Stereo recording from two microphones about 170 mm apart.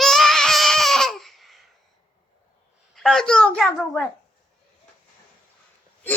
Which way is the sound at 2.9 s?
Centre (ahead or behind).